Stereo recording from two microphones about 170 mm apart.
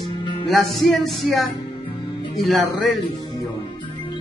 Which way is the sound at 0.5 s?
Centre (ahead or behind).